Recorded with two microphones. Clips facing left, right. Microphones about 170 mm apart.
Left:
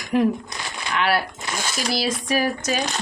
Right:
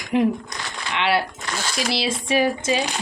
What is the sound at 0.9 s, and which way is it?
Speech, 25° right (ahead or behind).